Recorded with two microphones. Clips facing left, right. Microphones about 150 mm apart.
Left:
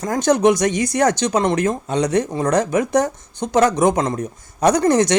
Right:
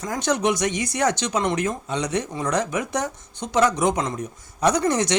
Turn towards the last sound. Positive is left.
turn(degrees=45)  # may be behind; listen again after turning